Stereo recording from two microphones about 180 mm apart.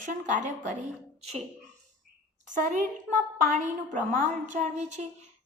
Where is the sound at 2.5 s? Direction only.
45° right (ahead or behind).